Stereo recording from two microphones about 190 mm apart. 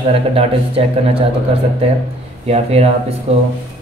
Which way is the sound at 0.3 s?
30° right (ahead or behind).